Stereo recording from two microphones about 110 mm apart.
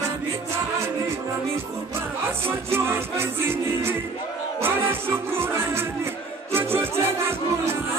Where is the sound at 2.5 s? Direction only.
20° right (ahead or behind).